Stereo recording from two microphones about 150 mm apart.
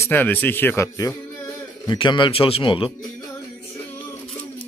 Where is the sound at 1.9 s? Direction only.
30° left (ahead or behind).